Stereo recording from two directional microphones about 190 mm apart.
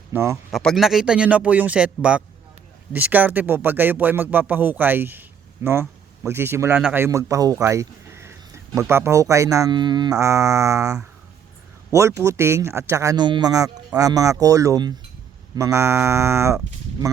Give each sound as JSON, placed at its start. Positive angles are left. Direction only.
{"t": 0.1, "sound": "speech", "side_deg": -10}
{"t": 0.5, "sound": "a man's voice", "side_deg": 0}